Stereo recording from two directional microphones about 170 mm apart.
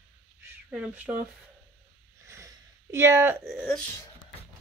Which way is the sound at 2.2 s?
15° right (ahead or behind).